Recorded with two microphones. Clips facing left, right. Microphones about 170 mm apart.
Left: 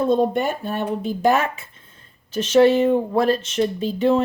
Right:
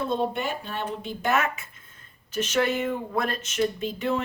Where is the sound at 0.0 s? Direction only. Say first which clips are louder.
Left 8 dB; 45° left (ahead or behind).